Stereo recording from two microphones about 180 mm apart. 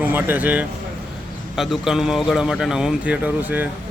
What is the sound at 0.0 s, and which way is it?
Speech, 10° right (ahead or behind).